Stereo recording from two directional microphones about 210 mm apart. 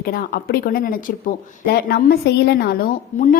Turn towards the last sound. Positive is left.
turn(degrees=40)  # may be behind; listen again after turning